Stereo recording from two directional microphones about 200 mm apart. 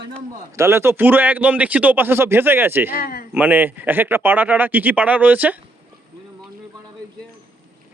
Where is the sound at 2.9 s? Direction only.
50° left (ahead or behind).